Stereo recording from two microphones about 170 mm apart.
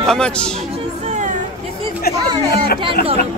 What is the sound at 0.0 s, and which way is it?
Speech, 5° left (ahead or behind).